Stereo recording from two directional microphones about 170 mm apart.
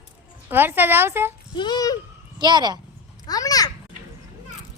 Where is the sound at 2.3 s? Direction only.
25° right (ahead or behind).